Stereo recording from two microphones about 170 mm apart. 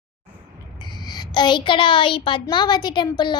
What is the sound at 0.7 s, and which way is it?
A woman's voice, 25° left (ahead or behind).